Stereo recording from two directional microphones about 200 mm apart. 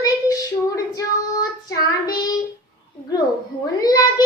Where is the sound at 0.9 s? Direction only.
20° left (ahead or behind).